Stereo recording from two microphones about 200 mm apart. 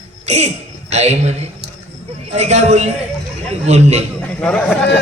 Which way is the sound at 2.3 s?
35° right (ahead or behind).